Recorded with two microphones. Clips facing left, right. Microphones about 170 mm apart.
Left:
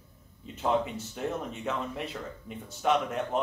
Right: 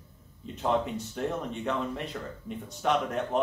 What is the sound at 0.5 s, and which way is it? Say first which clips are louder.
Speech: even; centre (ahead or behind).